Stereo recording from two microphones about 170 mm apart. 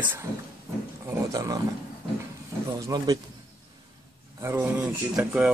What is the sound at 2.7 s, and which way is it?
Speech, 20° right (ahead or behind).